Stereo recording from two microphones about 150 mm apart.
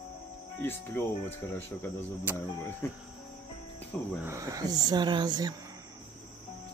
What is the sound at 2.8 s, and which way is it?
Speech, 15° left (ahead or behind).